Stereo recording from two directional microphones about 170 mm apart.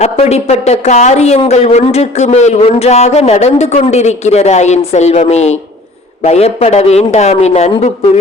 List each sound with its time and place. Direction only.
0.0 s speech: 40° left (ahead or behind)